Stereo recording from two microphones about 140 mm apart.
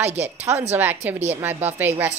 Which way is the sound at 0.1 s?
50° right (ahead or behind).